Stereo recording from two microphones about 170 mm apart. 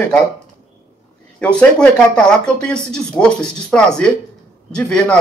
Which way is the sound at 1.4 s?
5° left (ahead or behind).